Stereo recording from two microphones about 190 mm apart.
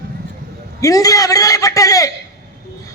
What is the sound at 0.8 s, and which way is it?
A man's voice, 20° left (ahead or behind).